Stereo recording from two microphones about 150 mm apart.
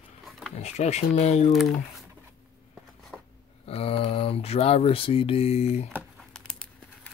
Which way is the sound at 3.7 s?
40° left (ahead or behind).